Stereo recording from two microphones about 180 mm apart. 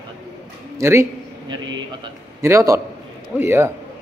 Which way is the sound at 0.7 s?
15° right (ahead or behind).